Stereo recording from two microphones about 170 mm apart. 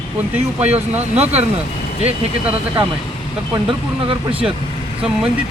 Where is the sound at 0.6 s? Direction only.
40° right (ahead or behind).